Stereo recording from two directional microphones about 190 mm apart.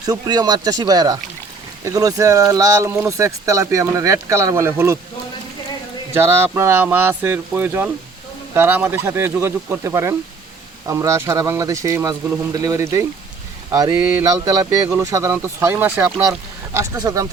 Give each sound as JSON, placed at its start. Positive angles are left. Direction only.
{"t": 0.0, "sound": "speech", "side_deg": -20}
{"t": 6.1, "sound": "speech", "side_deg": -15}